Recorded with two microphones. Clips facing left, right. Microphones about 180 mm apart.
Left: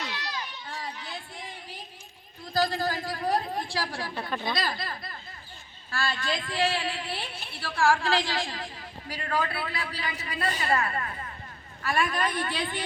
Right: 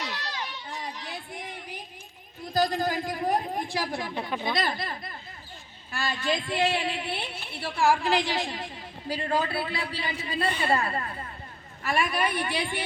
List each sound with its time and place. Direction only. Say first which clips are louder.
1.3 s a sound: right 3 dB; 15° right (ahead or behind)
2.5 s a man's voice: right 2 dB; 20° right (ahead or behind)
12.1 s speech: right 2 dB; 10° right (ahead or behind)